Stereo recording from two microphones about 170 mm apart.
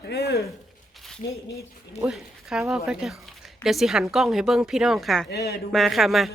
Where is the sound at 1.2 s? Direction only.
90° left.